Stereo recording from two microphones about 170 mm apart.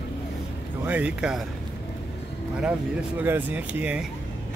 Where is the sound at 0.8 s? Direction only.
10° right (ahead or behind).